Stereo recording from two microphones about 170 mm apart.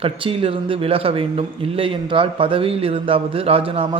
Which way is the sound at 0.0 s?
35° right (ahead or behind).